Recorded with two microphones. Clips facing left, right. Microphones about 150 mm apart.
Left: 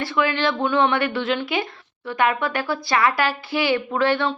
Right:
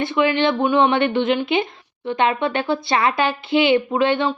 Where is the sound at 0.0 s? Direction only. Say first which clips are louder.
Right 4 dB; 20° right (ahead or behind).